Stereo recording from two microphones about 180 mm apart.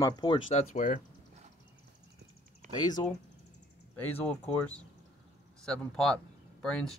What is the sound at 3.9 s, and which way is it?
Speech, 10° left (ahead or behind).